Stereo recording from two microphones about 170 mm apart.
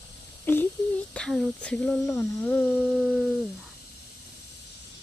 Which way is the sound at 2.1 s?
10° left (ahead or behind).